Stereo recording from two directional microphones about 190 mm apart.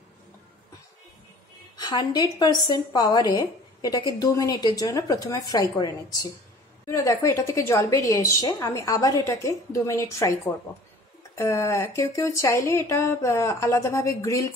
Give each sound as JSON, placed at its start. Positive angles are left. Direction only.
{"t": 1.8, "sound": "a woman's voice", "side_deg": 20}
{"t": 6.9, "sound": "a woman's voice", "side_deg": 15}
{"t": 11.3, "sound": "a woman's voice", "side_deg": 15}